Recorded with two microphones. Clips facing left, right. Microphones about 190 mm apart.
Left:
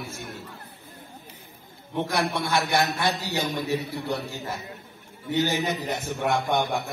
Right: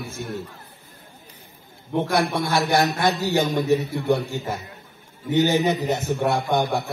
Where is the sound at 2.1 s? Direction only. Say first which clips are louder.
Right 3 dB; 35° right (ahead or behind).